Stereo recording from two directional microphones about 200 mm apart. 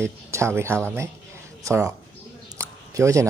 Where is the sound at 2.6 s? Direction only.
15° right (ahead or behind).